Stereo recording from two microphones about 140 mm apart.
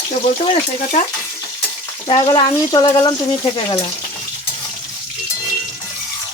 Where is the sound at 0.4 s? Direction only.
50° left (ahead or behind).